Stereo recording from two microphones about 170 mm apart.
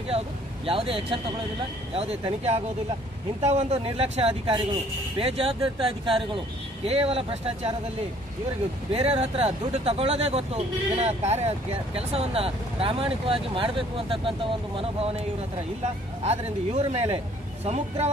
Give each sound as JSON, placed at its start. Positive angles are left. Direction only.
{"t": 0.7, "sound": "speech", "side_deg": -30}
{"t": 8.9, "sound": "speech", "side_deg": -35}